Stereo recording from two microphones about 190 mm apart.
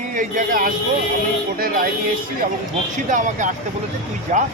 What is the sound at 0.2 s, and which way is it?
A man's voice, 45° right (ahead or behind).